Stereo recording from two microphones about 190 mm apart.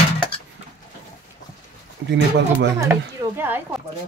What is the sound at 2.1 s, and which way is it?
Speech, 65° right (ahead or behind).